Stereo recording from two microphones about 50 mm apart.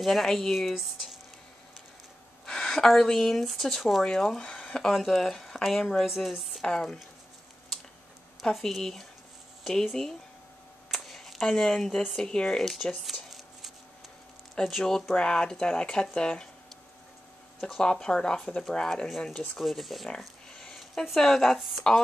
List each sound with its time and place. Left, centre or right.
0.0 s a woman's voice: centre
2.4 s speech: centre
6.0 s a woman's voice: centre
6.7 s speech: centre
8.4 s a woman's voice: centre
10.9 s a sound: centre
11.4 s speech: centre
12.6 s a sound: centre
14.9 s speech: centre
17.6 s speech: centre
18.6 s speech: centre
19.6 s a woman's voice: centre
21.8 s speech: centre